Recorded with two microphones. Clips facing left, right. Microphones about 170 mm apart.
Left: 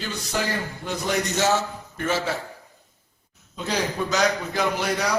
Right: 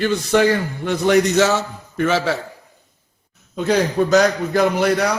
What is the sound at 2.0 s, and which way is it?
Speech, 85° right.